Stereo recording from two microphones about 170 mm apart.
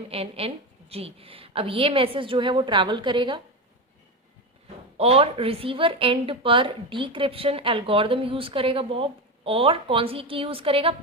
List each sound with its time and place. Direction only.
0.1 s a woman's voice: 35° right (ahead or behind)
4.9 s a woman's voice: 35° right (ahead or behind)